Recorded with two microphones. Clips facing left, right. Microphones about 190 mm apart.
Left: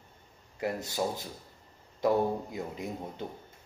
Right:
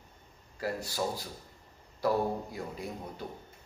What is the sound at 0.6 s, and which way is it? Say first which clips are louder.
A man's voice: left 2 dB; 20° left (ahead or behind).